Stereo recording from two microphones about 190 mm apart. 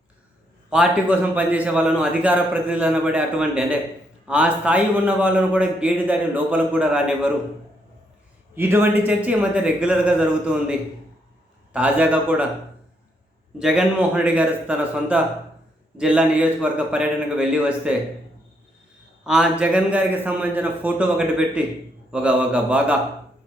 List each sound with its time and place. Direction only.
0.7 s a man's voice: 5° right (ahead or behind)
8.5 s a man's voice: 10° right (ahead or behind)
13.6 s a man's voice: 5° right (ahead or behind)
19.2 s a man's voice: 5° right (ahead or behind)